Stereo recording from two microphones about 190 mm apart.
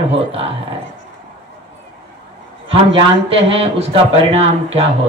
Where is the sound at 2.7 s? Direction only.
30° right (ahead or behind).